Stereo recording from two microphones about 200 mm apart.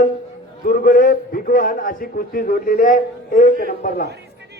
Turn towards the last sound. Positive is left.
turn(degrees=40)  # may be behind; listen again after turning